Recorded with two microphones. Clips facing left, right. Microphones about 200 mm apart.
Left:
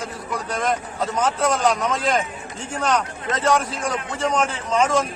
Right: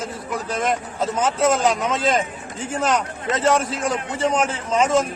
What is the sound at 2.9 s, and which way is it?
Speech, 25° right (ahead or behind).